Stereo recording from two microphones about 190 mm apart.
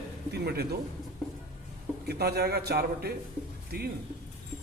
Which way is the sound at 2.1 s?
55° right (ahead or behind).